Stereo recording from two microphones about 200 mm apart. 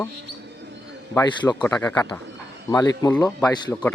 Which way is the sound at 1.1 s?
20° left (ahead or behind).